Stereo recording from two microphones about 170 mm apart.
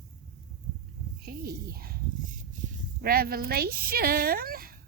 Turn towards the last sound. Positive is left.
turn(degrees=-60)  # may be behind; listen again after turning